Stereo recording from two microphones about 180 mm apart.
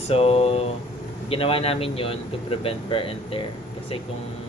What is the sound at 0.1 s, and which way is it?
Speech, 35° left (ahead or behind).